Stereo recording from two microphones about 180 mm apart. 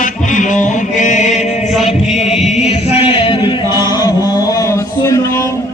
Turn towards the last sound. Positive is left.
turn(degrees=15)  # may be behind; listen again after turning